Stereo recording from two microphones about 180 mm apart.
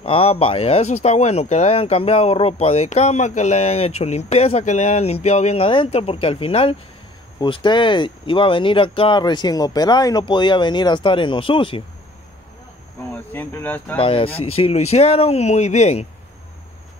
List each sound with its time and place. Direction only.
0.0 s speech: 30° left (ahead or behind)
13.1 s speech: 10° left (ahead or behind)
13.9 s speech: 30° left (ahead or behind)